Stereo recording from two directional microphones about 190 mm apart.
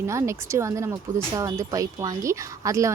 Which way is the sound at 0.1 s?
15° right (ahead or behind).